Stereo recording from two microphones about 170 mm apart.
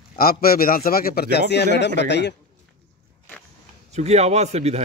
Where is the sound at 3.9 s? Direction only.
40° right (ahead or behind).